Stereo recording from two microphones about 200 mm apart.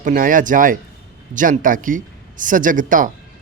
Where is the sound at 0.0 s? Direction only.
45° right (ahead or behind).